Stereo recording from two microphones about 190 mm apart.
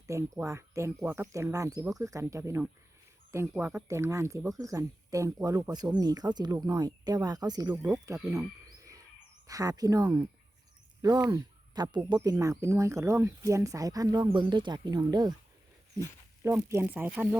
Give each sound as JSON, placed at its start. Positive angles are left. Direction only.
{"t": 0.1, "sound": "speech", "side_deg": -15}
{"t": 8.8, "sound": "a sound", "side_deg": -15}
{"t": 9.5, "sound": "speech", "side_deg": -20}
{"t": 16.4, "sound": "speech", "side_deg": -15}